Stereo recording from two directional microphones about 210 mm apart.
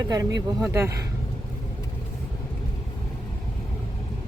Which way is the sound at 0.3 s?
15° right (ahead or behind).